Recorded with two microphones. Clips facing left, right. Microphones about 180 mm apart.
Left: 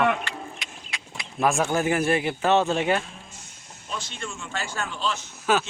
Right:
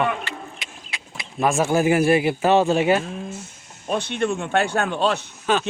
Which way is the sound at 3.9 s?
60° right (ahead or behind).